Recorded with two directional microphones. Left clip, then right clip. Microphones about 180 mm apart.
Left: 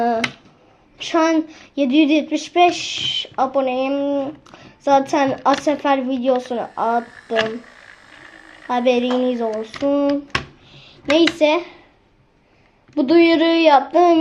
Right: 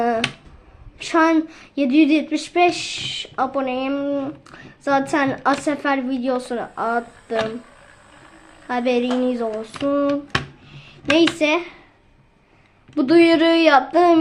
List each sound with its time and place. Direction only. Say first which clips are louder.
1.0 s speech: even; 10° right (ahead or behind)
8.6 s speech: left 3 dB; 5° right (ahead or behind)
12.9 s speech: even; 5° right (ahead or behind)